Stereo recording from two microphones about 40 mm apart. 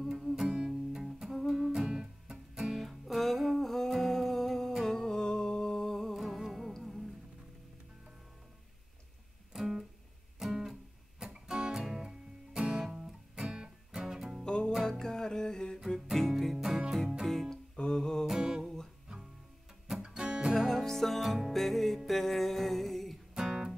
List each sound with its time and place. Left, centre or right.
0.4 s music: centre
1.9 s music: right
2.7 s music: centre
6.1 s music: centre
9.5 s music: centre
14.4 s music: left
16.1 s music: centre
17.3 s music: centre
17.7 s humming: centre
18.2 s music: centre
18.6 s music: centre
20.0 s guitar: right
20.5 s music: centre
23.3 s guitar: centre